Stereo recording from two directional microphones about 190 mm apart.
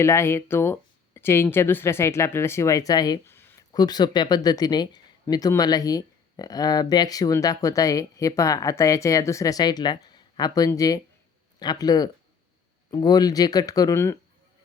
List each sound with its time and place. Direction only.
0.0 s speech: 15° left (ahead or behind)